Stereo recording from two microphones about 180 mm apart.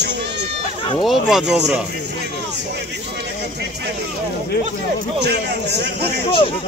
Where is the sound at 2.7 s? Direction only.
70° right (ahead or behind).